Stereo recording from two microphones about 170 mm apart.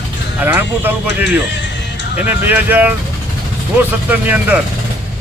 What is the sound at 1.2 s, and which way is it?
Speech, 90° left.